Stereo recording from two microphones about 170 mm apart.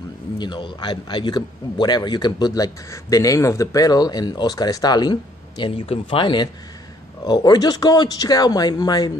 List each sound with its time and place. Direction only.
0.4 s speech: 30° left (ahead or behind)